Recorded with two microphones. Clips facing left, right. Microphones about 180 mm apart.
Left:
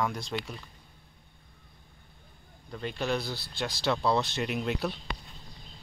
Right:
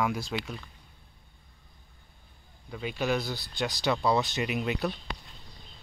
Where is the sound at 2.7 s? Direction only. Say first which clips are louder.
Right 2 dB; 5° right (ahead or behind).